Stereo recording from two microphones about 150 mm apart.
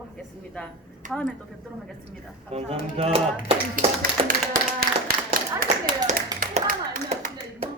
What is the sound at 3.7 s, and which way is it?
Speech, 70° right (ahead or behind).